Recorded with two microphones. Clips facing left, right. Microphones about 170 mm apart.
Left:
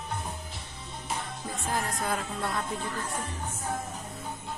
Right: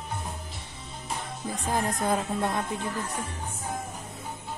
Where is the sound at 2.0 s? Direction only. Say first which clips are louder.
Right 5 dB; 20° right (ahead or behind).